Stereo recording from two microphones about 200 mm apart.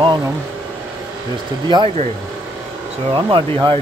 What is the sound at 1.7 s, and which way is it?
Speech, 25° right (ahead or behind).